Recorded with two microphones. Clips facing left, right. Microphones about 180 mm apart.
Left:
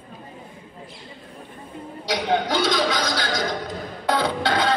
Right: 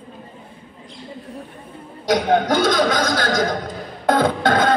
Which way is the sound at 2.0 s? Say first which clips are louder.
Right 6 dB; 50° right (ahead or behind).